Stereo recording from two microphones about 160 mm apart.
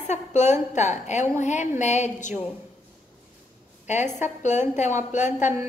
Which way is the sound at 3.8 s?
45° left (ahead or behind).